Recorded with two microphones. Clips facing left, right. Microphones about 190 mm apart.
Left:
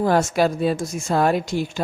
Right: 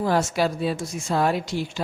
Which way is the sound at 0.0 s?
50° left (ahead or behind).